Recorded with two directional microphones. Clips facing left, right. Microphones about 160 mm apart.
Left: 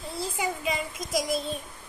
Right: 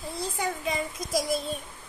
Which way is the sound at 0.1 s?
Centre (ahead or behind).